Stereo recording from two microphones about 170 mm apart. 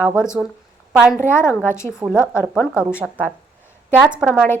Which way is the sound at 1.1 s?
15° left (ahead or behind).